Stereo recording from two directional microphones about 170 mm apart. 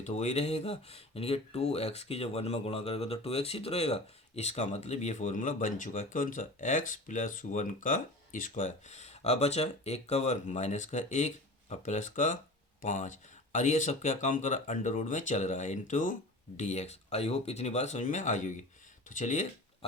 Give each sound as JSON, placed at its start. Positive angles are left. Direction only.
{"t": 0.0, "sound": "speech", "side_deg": 40}